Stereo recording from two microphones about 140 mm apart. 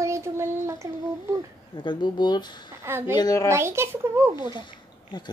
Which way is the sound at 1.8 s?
35° left (ahead or behind).